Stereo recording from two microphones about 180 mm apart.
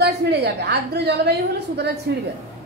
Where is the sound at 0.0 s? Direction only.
65° right (ahead or behind).